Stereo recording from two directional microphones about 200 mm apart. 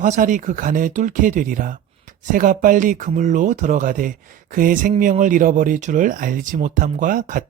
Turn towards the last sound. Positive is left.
turn(degrees=-40)  # may be behind; listen again after turning